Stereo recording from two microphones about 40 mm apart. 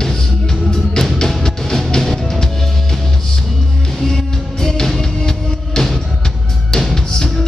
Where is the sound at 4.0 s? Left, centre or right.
Centre.